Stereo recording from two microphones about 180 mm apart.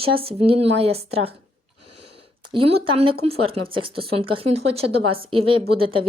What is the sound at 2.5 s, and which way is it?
Speech, 30° right (ahead or behind).